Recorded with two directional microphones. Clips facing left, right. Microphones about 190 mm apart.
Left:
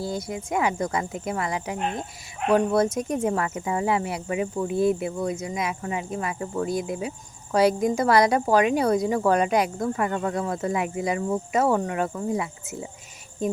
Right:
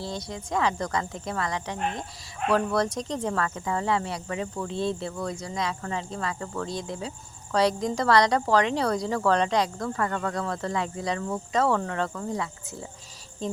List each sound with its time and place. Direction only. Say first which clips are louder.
0.2 s speech: right 1 dB; 20° left (ahead or behind)
4.7 s speech: left 7 dB; 25° right (ahead or behind)
4.9 s speech: left 5 dB; 20° left (ahead or behind)